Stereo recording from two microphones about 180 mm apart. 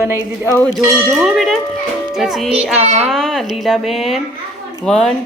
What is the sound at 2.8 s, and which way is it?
Speech, 40° right (ahead or behind).